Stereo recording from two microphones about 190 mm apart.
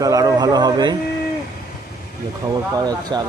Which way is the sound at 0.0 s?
20° right (ahead or behind).